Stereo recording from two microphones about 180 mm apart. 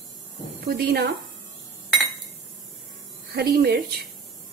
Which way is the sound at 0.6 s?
60° right (ahead or behind).